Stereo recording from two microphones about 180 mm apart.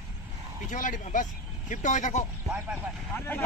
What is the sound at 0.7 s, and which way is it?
Speech, 45° left (ahead or behind).